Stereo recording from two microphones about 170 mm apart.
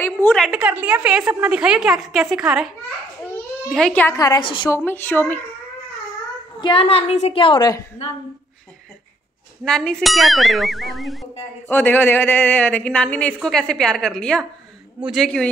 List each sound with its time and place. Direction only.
0.0 s speech: 10° left (ahead or behind)
0.4 s a woman's voice: 5° right (ahead or behind)
1.4 s ding: 5° right (ahead or behind)
3.7 s speech: 5° left (ahead or behind)
4.2 s a woman's voice: 25° left (ahead or behind)
4.6 s speech: 15° left (ahead or behind)
6.6 s a woman's voice: 30° left (ahead or behind)
9.7 s ding: 5° left (ahead or behind)
11.6 s speech: 10° left (ahead or behind)
15.0 s ding: centre (ahead or behind)